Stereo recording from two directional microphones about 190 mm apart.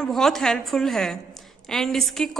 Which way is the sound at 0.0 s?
Centre (ahead or behind).